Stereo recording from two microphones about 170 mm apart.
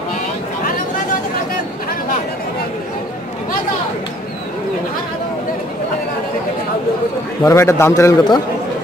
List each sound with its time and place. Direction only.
7.4 s a man's voice: 15° left (ahead or behind)